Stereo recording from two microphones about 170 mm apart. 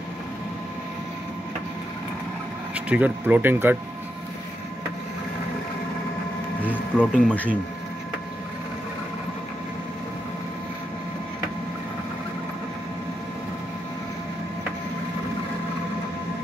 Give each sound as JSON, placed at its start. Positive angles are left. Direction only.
{"t": 2.7, "sound": "speech", "side_deg": -10}
{"t": 6.6, "sound": "speech", "side_deg": 10}